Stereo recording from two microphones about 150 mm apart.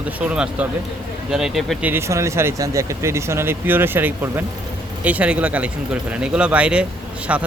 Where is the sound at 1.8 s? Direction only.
15° right (ahead or behind).